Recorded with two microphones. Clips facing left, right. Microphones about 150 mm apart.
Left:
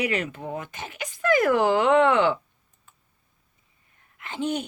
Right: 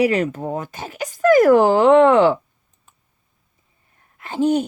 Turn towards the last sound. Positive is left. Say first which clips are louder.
# right 10 dB
turn(degrees=-35)  # may be behind; listen again after turning